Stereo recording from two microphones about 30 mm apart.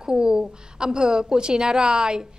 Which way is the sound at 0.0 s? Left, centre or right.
Right.